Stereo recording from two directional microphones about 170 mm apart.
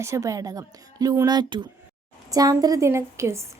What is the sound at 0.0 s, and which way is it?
A woman's voice, 20° right (ahead or behind).